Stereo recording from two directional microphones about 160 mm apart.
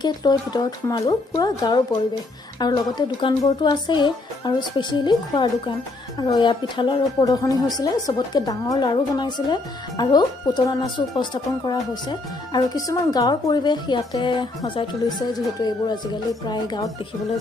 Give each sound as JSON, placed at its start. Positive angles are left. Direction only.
{"t": 0.0, "sound": "speech", "side_deg": 25}